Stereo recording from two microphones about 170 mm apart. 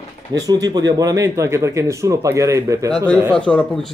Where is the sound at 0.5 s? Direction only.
25° right (ahead or behind).